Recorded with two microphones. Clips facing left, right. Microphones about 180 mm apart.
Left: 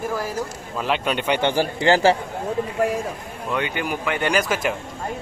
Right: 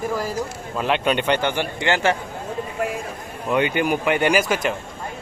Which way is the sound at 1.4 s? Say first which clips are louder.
Left 3 dB; 35° left (ahead or behind).